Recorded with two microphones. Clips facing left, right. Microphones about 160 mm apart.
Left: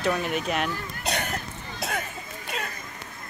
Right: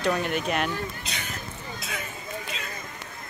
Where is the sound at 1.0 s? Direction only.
55° left (ahead or behind).